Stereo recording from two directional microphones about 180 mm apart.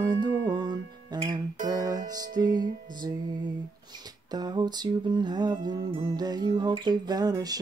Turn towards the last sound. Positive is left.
turn(degrees=-20)  # may be behind; listen again after turning